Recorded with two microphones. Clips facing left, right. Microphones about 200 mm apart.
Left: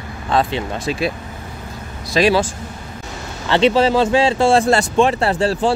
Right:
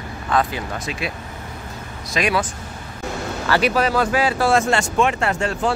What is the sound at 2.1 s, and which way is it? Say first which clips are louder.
Speech: left 6 dB; 30° left (ahead or behind).